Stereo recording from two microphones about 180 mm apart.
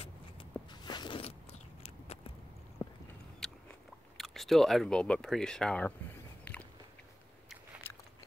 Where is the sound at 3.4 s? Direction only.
Centre (ahead or behind).